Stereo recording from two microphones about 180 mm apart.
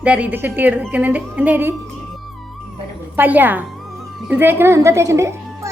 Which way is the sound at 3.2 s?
10° right (ahead or behind).